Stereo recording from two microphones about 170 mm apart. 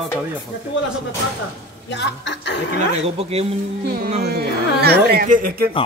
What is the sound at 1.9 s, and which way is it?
Speech, 90° left.